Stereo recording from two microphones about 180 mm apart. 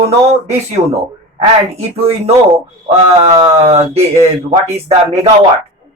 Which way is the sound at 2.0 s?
35° right (ahead or behind).